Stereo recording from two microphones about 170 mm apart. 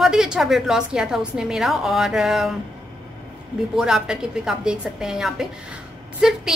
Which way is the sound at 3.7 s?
5° right (ahead or behind).